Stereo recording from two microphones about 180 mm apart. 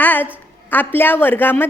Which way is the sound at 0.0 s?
10° left (ahead or behind).